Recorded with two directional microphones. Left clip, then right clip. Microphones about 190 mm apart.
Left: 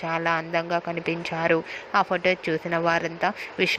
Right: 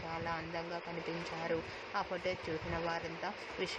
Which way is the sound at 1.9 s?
35° left (ahead or behind).